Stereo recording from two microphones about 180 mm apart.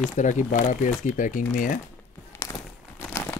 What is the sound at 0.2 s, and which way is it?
Speech, 45° left (ahead or behind).